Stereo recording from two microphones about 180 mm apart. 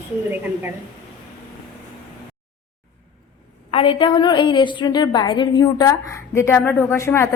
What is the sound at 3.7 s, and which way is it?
A woman's voice, 30° left (ahead or behind).